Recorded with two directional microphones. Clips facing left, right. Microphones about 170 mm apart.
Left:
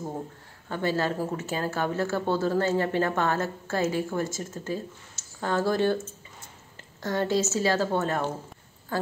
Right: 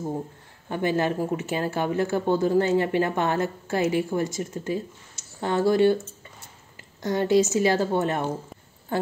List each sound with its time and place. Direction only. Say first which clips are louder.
0.7 s speech: right 3 dB; 15° right (ahead or behind)
7.0 s speech: right 5 dB; 15° right (ahead or behind)